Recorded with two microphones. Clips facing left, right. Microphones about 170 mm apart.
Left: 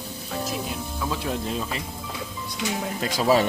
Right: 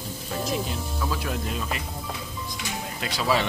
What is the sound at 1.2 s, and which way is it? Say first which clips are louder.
Speech: left 2 dB; 30° left (ahead or behind).